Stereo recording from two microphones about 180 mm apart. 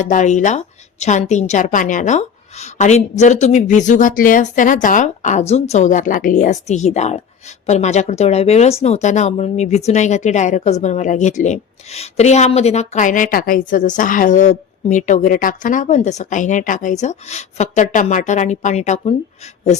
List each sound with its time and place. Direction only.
0.0 s a woman's voice: 45° left (ahead or behind)